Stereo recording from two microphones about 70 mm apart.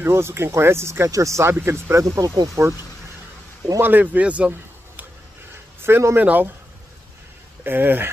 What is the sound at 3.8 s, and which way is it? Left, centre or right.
Speech, right.